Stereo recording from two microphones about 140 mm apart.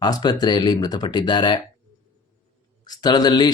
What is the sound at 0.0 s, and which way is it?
Speech, 30° left (ahead or behind).